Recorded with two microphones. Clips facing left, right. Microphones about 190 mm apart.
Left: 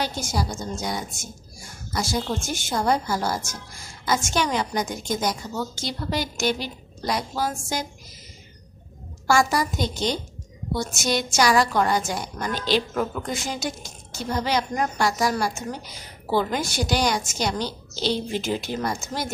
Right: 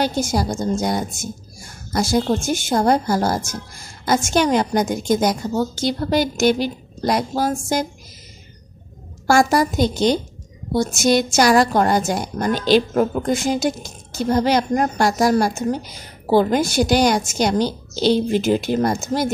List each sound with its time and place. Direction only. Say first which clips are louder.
0.0 s a woman's voice: right 7 dB; 50° right (ahead or behind)
5.5 s a woman's voice: right 9 dB; 50° right (ahead or behind)
9.3 s a woman's voice: right 5 dB; 55° right (ahead or behind)